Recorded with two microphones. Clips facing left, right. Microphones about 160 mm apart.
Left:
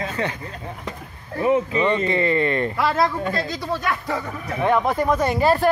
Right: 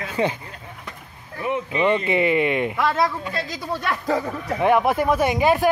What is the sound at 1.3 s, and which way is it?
Speech, 35° left (ahead or behind).